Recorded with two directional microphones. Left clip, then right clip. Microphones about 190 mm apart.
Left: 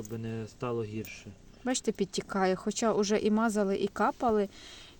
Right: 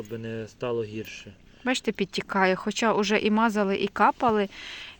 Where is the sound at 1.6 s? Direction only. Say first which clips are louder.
Right 5 dB; centre (ahead or behind).